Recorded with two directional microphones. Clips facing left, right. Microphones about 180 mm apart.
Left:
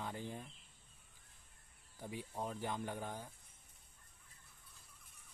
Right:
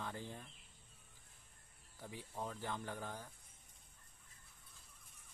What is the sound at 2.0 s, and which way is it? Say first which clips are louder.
Speech: left 3 dB; 15° left (ahead or behind).